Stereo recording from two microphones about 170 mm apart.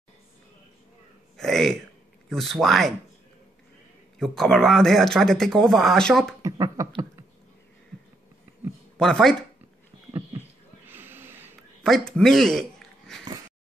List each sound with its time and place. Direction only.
1.3 s a sound: centre (ahead or behind)
2.2 s speech: centre (ahead or behind)
4.2 s speech: centre (ahead or behind)
6.4 s speech: 20° right (ahead or behind)
9.0 s speech: 5° left (ahead or behind)
10.9 s snort: 15° right (ahead or behind)
11.8 s a man's voice: 5° left (ahead or behind)